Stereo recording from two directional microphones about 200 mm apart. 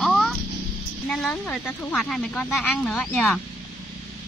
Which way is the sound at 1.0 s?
5° left (ahead or behind).